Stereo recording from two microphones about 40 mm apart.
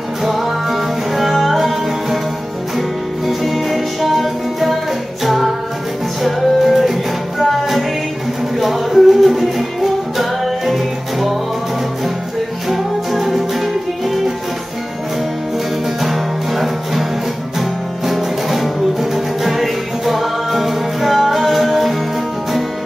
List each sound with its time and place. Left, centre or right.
0.2 s music: centre
3.3 s music: centre
12.6 s music: centre
16.0 s music: centre